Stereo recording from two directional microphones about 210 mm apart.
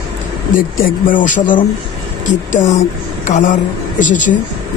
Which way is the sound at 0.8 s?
40° left (ahead or behind).